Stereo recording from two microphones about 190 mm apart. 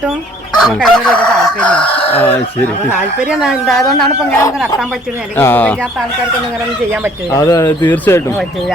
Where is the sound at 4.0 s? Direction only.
10° left (ahead or behind).